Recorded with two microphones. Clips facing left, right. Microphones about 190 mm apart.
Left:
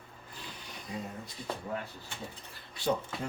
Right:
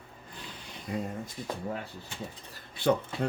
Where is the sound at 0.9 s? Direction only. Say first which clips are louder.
Right 6 dB; 55° right (ahead or behind).